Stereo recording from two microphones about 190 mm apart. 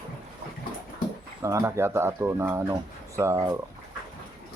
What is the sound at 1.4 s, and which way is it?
Speech, 15° right (ahead or behind).